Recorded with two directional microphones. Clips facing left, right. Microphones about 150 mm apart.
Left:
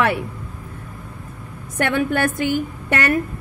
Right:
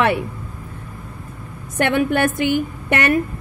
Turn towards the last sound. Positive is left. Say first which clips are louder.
# right 2 dB
turn(degrees=-20)  # may be behind; listen again after turning